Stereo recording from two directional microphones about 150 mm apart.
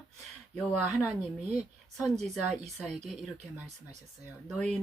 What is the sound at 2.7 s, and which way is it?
Speech, 5° left (ahead or behind).